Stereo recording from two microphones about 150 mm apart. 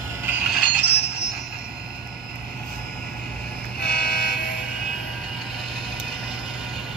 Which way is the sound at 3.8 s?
90° left.